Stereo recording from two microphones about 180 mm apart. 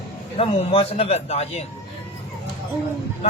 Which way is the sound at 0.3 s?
35° left (ahead or behind).